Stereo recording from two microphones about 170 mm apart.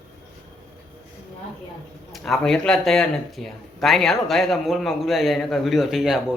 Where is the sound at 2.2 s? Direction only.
Centre (ahead or behind).